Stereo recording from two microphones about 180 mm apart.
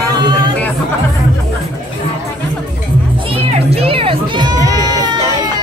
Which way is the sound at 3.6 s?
35° right (ahead or behind).